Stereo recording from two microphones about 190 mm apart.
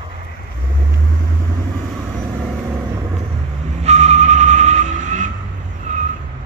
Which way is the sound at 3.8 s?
35° right (ahead or behind).